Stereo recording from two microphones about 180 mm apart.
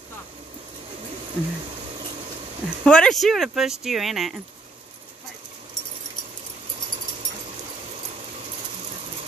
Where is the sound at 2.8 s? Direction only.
5° left (ahead or behind).